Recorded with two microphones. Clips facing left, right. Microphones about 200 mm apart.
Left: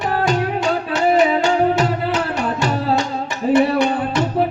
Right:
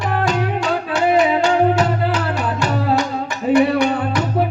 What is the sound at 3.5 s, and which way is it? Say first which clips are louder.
Music: right 1 dB; 25° left (ahead or behind).